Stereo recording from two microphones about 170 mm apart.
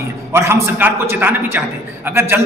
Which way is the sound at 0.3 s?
15° right (ahead or behind).